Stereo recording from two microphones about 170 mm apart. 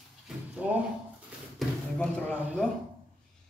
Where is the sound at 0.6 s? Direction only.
5° right (ahead or behind).